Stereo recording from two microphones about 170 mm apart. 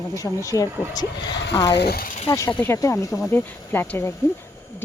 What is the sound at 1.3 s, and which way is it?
Speech, 90° left.